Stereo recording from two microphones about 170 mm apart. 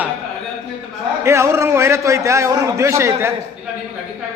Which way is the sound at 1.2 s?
15° right (ahead or behind).